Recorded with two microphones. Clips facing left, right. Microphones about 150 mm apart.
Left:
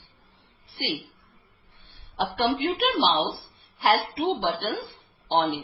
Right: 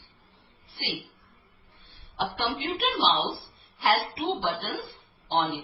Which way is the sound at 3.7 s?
65° left (ahead or behind).